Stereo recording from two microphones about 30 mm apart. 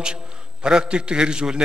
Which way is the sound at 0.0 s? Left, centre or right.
Right.